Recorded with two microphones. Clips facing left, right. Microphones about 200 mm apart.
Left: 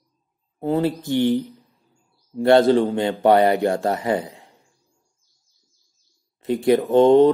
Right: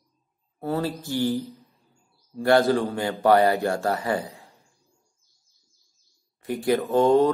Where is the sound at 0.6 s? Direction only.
20° left (ahead or behind).